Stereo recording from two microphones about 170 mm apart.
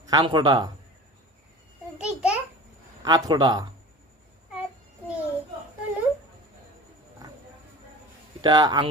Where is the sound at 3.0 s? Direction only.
25° right (ahead or behind).